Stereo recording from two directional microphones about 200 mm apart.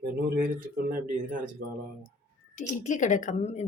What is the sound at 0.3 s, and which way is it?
Speech, 45° right (ahead or behind).